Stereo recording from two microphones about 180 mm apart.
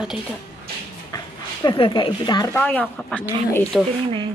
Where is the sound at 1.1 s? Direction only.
25° left (ahead or behind).